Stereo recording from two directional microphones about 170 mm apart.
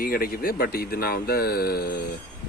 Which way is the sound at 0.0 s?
60° left (ahead or behind).